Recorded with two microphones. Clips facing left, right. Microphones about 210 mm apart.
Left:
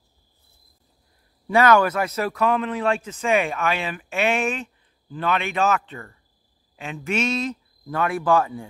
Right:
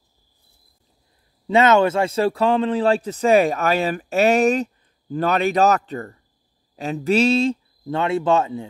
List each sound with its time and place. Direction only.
1.5 s a man's voice: 25° right (ahead or behind)